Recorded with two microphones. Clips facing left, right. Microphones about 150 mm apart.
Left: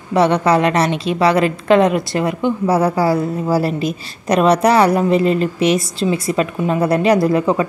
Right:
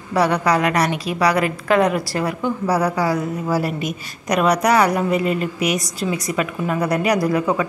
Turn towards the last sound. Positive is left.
turn(degrees=25)  # may be behind; listen again after turning